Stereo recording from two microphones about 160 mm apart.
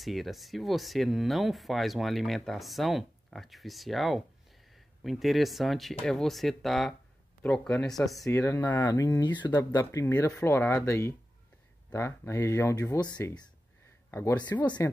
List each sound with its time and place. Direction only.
0.0 s speech: centre (ahead or behind)
8.3 s speech: 15° left (ahead or behind)